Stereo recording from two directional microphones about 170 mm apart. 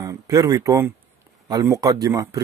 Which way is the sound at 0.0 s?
20° right (ahead or behind).